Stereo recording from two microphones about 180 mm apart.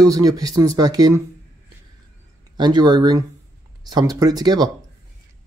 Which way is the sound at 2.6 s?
25° right (ahead or behind).